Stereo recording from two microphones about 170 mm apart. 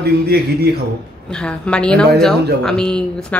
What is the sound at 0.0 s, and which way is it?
Speech, 70° right (ahead or behind).